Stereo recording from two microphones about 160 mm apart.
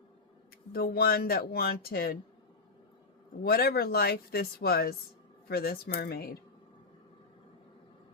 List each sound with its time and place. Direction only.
0.7 s speech: 70° left (ahead or behind)
3.4 s speech: 75° left (ahead or behind)